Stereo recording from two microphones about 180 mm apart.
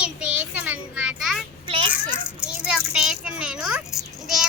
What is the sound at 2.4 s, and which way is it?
A child's voice, 5° right (ahead or behind).